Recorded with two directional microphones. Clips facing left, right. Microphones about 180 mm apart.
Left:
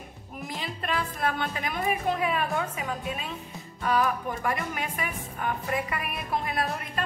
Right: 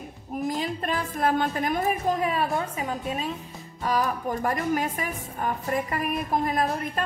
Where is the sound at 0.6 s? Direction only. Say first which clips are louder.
Right 3 dB; 40° right (ahead or behind).